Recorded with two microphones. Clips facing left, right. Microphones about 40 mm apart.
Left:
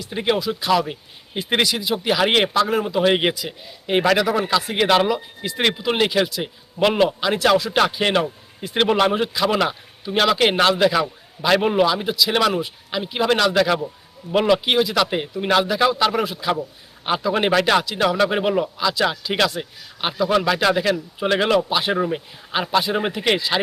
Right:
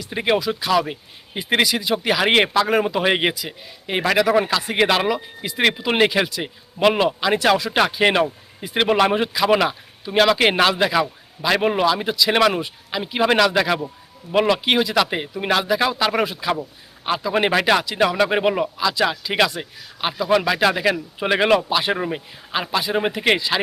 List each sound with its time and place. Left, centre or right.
0.1 s a man's voice: centre
2.6 s speech: right
2.9 s a man's voice: centre
18.8 s a man's voice: centre
21.7 s speech: centre
21.9 s a man's voice: centre
22.5 s speech: centre